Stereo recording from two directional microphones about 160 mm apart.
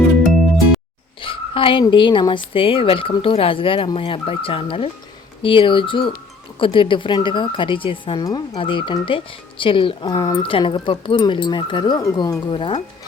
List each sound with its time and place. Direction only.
0.3 s music: centre (ahead or behind)
1.2 s speech: 35° left (ahead or behind)